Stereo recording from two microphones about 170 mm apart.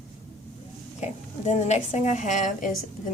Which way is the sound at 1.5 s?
40° left (ahead or behind).